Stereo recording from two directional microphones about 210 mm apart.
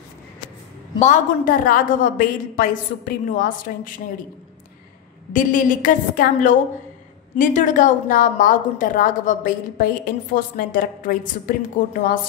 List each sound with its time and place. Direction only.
0.9 s a woman's voice: 35° left (ahead or behind)
5.3 s a woman's voice: 40° left (ahead or behind)